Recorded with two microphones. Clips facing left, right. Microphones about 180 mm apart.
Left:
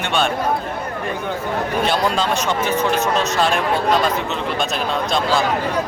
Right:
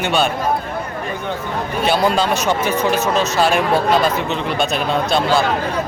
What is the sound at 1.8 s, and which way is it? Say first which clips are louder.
Speech: right 5 dB; 5° right (ahead or behind).